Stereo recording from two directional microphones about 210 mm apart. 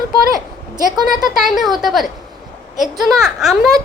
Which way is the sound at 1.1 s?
Centre (ahead or behind).